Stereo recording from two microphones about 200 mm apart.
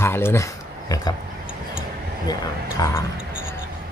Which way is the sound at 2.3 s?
20° left (ahead or behind).